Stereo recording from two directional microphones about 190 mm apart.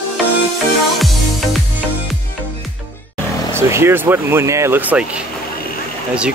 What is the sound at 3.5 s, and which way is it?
Speech, 15° right (ahead or behind).